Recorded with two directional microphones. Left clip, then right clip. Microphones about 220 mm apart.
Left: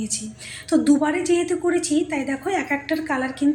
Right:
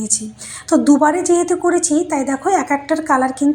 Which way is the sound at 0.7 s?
15° right (ahead or behind).